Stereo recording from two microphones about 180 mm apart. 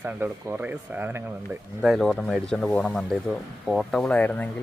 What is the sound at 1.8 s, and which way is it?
Speech, centre (ahead or behind).